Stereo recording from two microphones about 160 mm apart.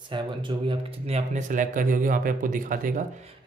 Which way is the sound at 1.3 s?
50° right (ahead or behind).